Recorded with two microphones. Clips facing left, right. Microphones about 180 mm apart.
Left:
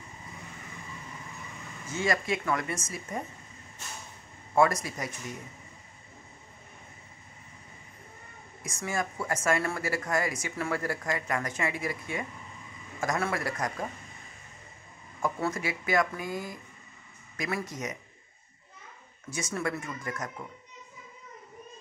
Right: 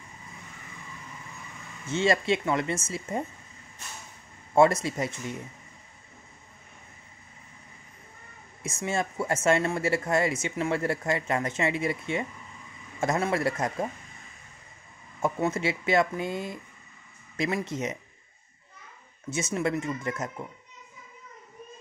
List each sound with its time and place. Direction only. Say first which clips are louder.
1.9 s speech: right 5 dB; 25° right (ahead or behind)
4.6 s speech: right 4 dB; 25° right (ahead or behind)
8.6 s speech: right 3 dB; 25° right (ahead or behind)
15.2 s speech: right 4 dB; 25° right (ahead or behind)
19.3 s speech: right 5 dB; 25° right (ahead or behind)